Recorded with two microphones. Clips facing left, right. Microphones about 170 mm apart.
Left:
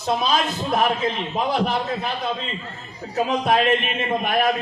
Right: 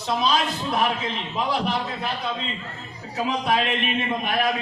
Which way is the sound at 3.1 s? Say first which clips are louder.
Left 4 dB; 45° left (ahead or behind).